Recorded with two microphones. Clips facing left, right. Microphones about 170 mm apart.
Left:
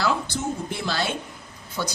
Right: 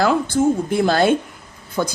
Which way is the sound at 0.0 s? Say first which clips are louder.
Right 9 dB; 50° right (ahead or behind).